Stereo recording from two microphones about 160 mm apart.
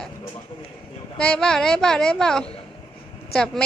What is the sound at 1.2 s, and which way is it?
A woman's voice, 5° left (ahead or behind).